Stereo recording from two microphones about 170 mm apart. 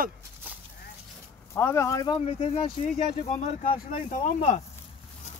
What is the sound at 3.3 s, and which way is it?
Speech, 40° left (ahead or behind).